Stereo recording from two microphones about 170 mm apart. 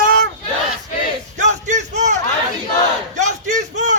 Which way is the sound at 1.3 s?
45° right (ahead or behind).